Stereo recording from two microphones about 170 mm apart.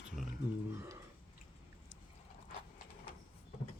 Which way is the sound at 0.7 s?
15° right (ahead or behind).